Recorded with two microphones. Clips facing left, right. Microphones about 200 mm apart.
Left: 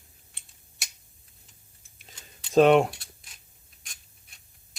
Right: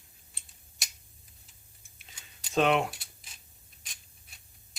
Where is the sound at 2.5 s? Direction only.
40° left (ahead or behind).